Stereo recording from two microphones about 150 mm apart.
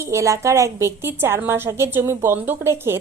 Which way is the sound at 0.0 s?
20° right (ahead or behind).